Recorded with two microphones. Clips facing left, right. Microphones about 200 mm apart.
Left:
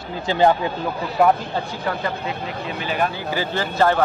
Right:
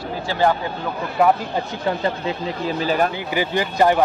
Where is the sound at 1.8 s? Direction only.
30° right (ahead or behind).